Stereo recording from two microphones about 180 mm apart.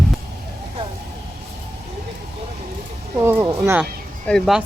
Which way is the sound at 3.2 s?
15° right (ahead or behind).